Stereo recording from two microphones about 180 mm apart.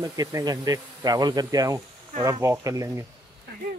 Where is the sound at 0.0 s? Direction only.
20° right (ahead or behind).